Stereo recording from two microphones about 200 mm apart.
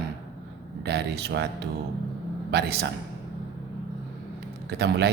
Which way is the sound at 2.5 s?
55° right (ahead or behind).